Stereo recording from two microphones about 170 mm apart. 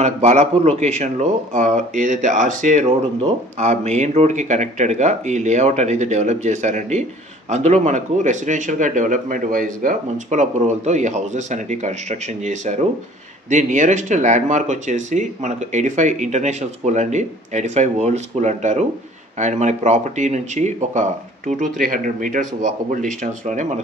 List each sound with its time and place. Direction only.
0.0 s speech: 40° right (ahead or behind)